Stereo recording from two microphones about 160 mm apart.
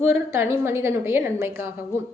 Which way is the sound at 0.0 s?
15° right (ahead or behind).